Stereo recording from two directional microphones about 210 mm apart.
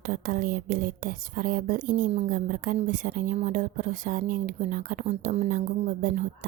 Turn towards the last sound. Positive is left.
turn(degrees=-40)  # may be behind; listen again after turning